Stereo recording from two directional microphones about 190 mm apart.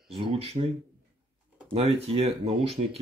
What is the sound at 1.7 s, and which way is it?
Speech, 30° right (ahead or behind).